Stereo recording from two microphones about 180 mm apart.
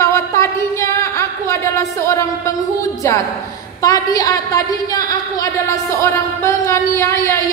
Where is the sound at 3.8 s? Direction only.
20° left (ahead or behind).